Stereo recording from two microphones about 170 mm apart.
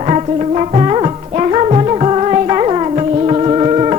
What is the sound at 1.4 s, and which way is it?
Music, 35° right (ahead or behind).